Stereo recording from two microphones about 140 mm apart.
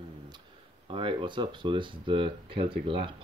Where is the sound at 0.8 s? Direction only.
35° right (ahead or behind).